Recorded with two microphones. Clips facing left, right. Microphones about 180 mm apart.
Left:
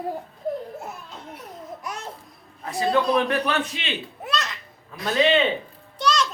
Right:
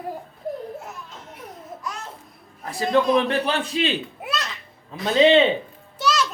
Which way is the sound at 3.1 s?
30° right (ahead or behind).